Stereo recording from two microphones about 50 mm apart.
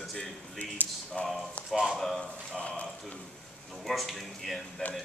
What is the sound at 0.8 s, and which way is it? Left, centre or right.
Speech, left.